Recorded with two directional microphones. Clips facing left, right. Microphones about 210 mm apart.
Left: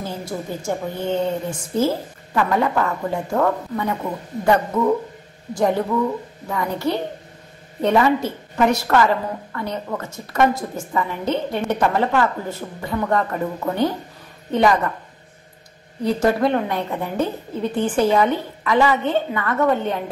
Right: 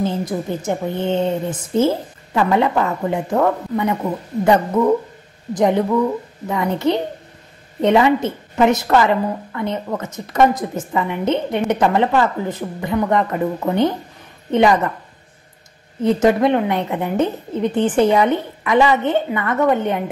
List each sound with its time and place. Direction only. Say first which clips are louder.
0.0 s a woman's voice: right 7 dB; 20° right (ahead or behind)
16.0 s a woman's voice: right 4 dB; 20° right (ahead or behind)